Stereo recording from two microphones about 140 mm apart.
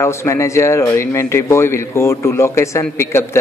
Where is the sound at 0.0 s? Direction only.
20° left (ahead or behind).